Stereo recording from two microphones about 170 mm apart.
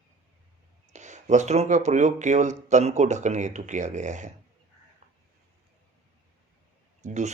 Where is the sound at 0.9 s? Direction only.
45° right (ahead or behind).